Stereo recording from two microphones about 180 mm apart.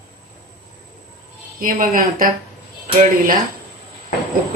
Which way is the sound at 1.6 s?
50° right (ahead or behind).